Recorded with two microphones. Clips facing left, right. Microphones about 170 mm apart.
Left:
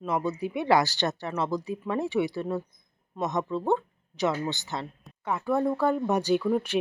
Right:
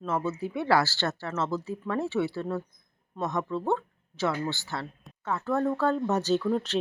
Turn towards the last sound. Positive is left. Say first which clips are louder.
# left 1 dB
turn(degrees=10)  # may be behind; listen again after turning